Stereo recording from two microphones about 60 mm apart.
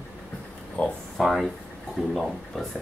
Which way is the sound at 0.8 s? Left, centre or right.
Left.